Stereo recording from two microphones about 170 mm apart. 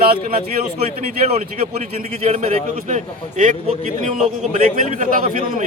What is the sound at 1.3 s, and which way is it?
A man's voice, 40° right (ahead or behind).